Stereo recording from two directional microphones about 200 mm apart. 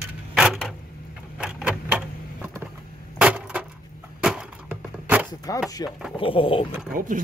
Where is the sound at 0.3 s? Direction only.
Centre (ahead or behind).